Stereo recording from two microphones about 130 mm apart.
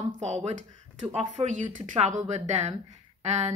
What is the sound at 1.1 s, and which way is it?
Speech, 60° right (ahead or behind).